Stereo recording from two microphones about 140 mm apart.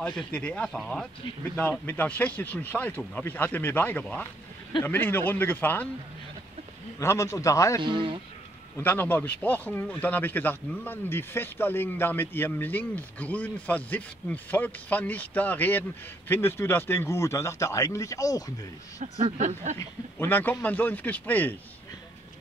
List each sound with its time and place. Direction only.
0.3 s speech: 10° left (ahead or behind)
1.5 s speech: 15° left (ahead or behind)
7.0 s a man's voice: 20° left (ahead or behind)
7.8 s a man's voice: 35° right (ahead or behind)
8.7 s a man's voice: 15° left (ahead or behind)
19.2 s speech: 60° right (ahead or behind)
19.8 s speech: 15° left (ahead or behind)